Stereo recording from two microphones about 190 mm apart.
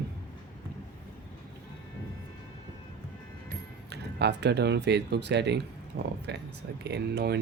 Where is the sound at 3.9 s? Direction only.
60° right (ahead or behind).